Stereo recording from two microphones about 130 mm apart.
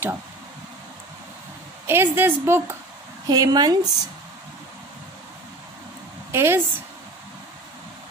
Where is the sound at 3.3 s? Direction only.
30° right (ahead or behind).